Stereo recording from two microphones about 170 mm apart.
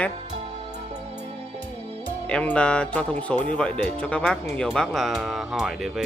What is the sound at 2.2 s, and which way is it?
Speech, 5° left (ahead or behind).